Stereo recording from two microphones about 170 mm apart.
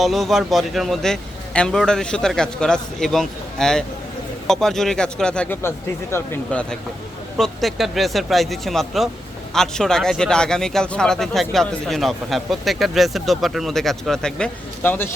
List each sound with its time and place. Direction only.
0.0 s speech: centre (ahead or behind)